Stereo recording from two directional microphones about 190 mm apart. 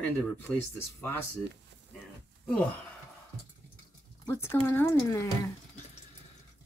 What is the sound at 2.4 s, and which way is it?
Speech, 5° left (ahead or behind).